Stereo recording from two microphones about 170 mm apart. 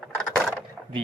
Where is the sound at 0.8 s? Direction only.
5° right (ahead or behind).